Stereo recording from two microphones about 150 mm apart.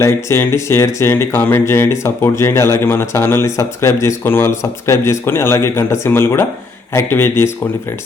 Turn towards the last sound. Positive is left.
turn(degrees=15)  # may be behind; listen again after turning